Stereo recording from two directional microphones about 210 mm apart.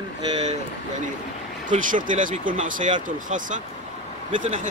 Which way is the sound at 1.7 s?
40° right (ahead or behind).